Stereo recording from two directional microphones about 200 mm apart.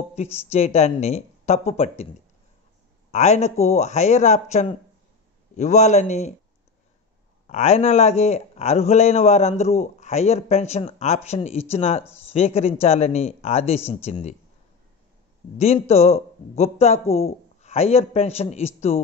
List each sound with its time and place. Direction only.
0.1 s a man's voice: 30° left (ahead or behind)
3.1 s a man's voice: 35° left (ahead or behind)
7.4 s a man's voice: 35° left (ahead or behind)
15.5 s a man's voice: 30° left (ahead or behind)